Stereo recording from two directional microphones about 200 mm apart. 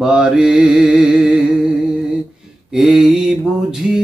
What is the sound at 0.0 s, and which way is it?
Mantra, 5° right (ahead or behind).